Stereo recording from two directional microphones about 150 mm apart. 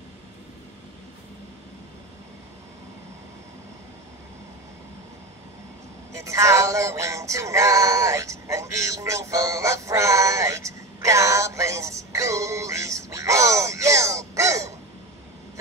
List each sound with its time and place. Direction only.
6.1 s music: 20° right (ahead or behind)